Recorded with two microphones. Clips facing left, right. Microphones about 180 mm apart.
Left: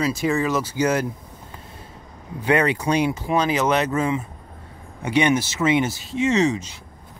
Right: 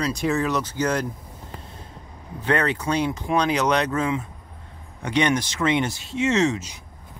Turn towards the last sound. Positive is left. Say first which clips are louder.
# left 1 dB
turn(degrees=0)  # may be behind; listen again after turning